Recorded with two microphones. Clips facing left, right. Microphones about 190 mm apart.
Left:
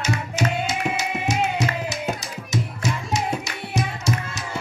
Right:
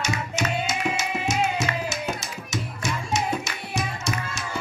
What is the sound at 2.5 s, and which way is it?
Music, 35° left (ahead or behind).